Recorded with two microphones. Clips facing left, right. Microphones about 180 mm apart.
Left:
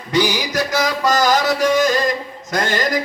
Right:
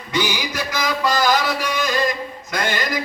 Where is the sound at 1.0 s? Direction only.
45° left (ahead or behind).